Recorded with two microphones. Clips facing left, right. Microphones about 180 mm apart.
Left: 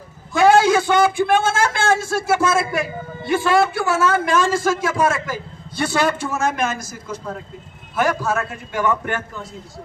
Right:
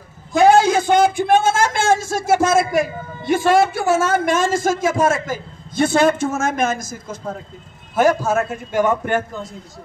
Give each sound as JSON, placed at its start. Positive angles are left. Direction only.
{"t": 0.4, "sound": "a man's voice", "side_deg": -40}